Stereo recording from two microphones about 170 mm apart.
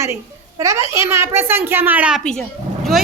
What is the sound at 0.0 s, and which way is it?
A child's voice, 15° right (ahead or behind).